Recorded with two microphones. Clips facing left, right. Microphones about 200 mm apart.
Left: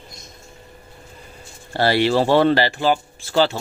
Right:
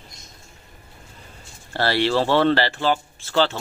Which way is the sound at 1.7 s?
15° left (ahead or behind).